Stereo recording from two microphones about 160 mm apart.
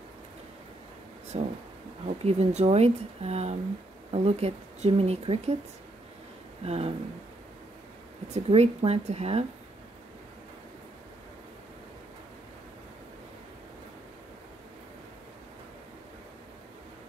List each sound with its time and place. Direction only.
1.3 s speech: 35° right (ahead or behind)
6.6 s speech: 40° right (ahead or behind)
8.3 s speech: 40° right (ahead or behind)